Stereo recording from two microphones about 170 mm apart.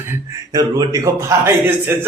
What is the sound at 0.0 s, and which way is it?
Speech, 15° right (ahead or behind).